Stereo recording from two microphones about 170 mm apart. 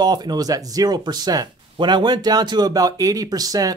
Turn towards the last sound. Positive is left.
turn(degrees=-20)  # may be behind; listen again after turning